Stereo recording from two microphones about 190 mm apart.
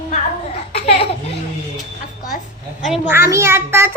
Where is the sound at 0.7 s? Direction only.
30° left (ahead or behind).